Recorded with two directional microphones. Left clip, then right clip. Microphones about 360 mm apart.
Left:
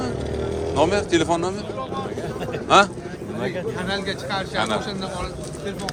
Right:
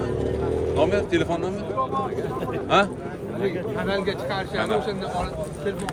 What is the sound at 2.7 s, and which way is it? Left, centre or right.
Speech, centre.